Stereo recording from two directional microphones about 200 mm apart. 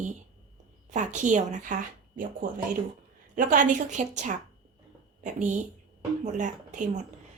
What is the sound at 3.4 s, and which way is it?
A woman's voice, 40° right (ahead or behind).